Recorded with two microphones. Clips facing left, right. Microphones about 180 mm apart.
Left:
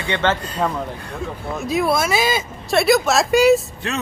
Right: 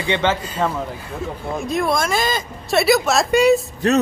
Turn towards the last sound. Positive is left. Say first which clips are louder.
# right 9 dB
turn(degrees=-40)  # may be behind; listen again after turning